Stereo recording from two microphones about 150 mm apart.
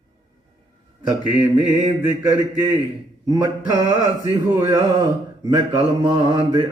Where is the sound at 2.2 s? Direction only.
25° right (ahead or behind).